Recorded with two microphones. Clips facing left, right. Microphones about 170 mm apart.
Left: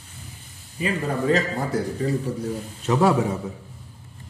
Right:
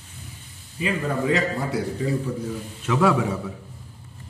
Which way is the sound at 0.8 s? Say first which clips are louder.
Even; 40° left (ahead or behind).